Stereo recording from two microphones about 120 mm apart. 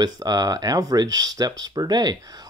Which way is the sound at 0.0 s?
30° right (ahead or behind).